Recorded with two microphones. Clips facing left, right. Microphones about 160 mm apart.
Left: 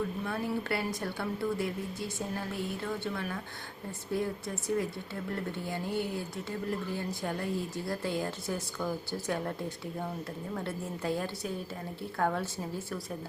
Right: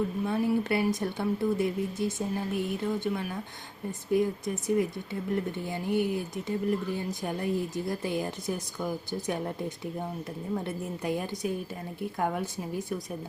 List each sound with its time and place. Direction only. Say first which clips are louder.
0.3 s a woman's voice: right 6 dB; 20° right (ahead or behind)